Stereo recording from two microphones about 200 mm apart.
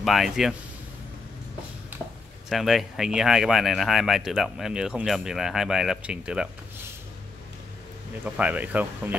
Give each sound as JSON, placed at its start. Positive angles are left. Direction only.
{"t": 0.0, "sound": "speech", "side_deg": 0}
{"t": 2.5, "sound": "speech", "side_deg": 0}
{"t": 8.4, "sound": "speech", "side_deg": -5}